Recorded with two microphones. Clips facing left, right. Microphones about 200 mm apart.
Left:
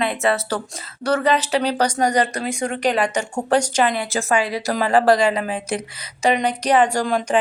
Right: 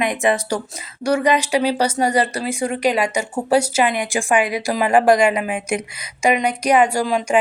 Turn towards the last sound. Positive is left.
turn(degrees=-10)  # may be behind; listen again after turning